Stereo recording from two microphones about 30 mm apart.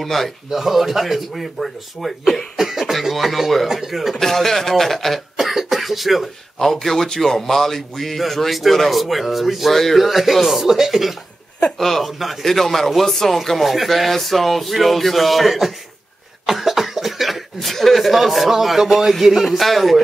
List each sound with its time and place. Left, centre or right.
0.0 s speech: centre
0.5 s speech: centre
2.5 s speech: centre
3.6 s speech: centre
4.1 s a man's voice: centre
5.4 s speech: centre
6.6 s a man's voice: centre
9.8 s a man's voice: centre
10.0 s speech: centre
11.8 s a man's voice: centre
12.1 s speech: centre
12.4 s speech: centre
16.4 s cough: centre
17.6 s speech: centre